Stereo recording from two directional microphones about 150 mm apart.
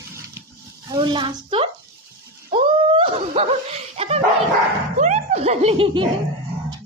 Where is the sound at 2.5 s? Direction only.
35° right (ahead or behind).